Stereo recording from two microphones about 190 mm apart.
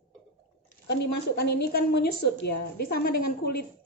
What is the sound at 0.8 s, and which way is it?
A woman's voice, 60° left (ahead or behind).